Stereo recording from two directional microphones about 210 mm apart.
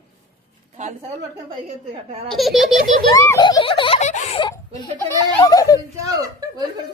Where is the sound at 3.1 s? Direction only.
15° left (ahead or behind).